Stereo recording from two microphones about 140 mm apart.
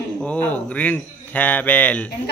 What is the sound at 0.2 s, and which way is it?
A man's voice, 10° left (ahead or behind).